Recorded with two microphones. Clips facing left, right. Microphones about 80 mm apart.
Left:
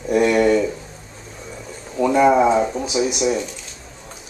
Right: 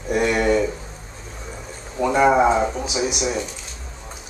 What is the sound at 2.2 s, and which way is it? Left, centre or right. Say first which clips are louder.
Speech: left 1 dB; centre.